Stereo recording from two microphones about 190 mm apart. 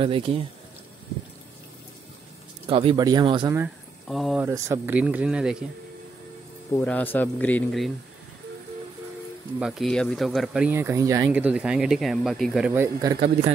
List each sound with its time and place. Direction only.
0.0 s speech: 30° right (ahead or behind)
2.6 s speech: 30° right (ahead or behind)
3.5 s speech: 5° right (ahead or behind)
4.4 s speech: 10° right (ahead or behind)
6.7 s speech: 10° left (ahead or behind)
9.6 s speech: centre (ahead or behind)
11.4 s speech: 5° right (ahead or behind)